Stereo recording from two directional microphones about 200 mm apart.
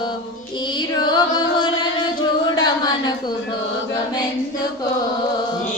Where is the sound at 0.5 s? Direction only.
25° left (ahead or behind).